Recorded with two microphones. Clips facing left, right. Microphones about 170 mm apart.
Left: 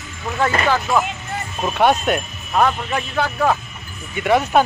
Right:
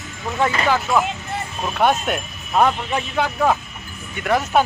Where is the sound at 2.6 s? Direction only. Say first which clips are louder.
Even; 15° right (ahead or behind).